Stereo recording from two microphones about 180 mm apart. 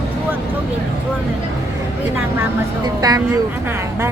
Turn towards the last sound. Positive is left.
turn(degrees=-20)  # may be behind; listen again after turning